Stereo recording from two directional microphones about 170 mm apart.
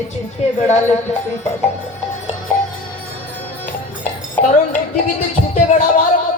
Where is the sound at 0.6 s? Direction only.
40° left (ahead or behind).